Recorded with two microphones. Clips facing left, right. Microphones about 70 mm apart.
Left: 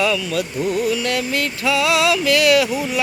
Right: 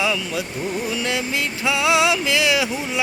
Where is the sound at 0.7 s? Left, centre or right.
Right.